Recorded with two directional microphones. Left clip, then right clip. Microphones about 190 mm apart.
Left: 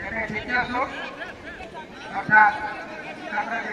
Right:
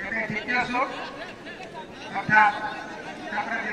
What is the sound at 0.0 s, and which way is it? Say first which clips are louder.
Chatter: even; 25° left (ahead or behind).